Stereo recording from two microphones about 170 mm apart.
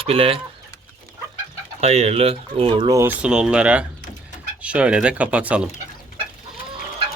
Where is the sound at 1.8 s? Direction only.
40° right (ahead or behind); by 5.6 s 10° right (ahead or behind).